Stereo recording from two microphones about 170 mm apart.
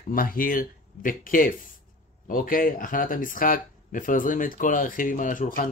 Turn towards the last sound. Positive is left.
turn(degrees=55)  # may be behind; listen again after turning